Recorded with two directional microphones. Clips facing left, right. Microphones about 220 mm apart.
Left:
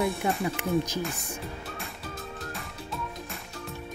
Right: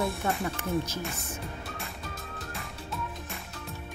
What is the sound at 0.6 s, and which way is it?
Speech, 15° left (ahead or behind).